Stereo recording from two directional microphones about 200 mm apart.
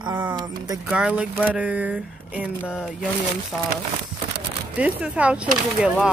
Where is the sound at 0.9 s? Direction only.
5° right (ahead or behind).